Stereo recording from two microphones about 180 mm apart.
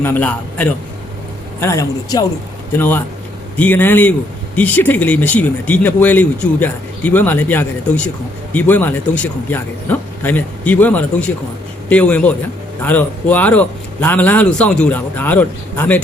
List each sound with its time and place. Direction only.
0.0 s speech: 10° left (ahead or behind)